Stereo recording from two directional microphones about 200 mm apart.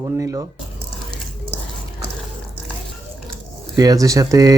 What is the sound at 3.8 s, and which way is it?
Speech, 15° right (ahead or behind).